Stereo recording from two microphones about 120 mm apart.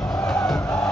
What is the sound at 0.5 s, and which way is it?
Music, 30° left (ahead or behind).